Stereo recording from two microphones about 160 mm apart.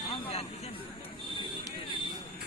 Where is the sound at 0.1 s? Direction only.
40° left (ahead or behind).